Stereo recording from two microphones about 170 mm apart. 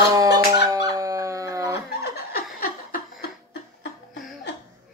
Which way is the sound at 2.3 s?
55° left (ahead or behind).